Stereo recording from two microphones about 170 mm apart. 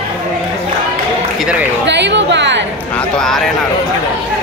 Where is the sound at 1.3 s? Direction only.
5° right (ahead or behind).